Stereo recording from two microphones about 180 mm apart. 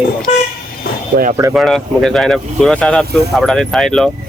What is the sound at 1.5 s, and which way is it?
Speech, centre (ahead or behind).